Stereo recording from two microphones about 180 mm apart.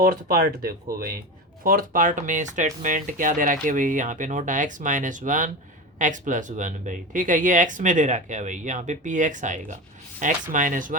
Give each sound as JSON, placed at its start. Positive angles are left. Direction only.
{"t": 0.0, "sound": "speech", "side_deg": -55}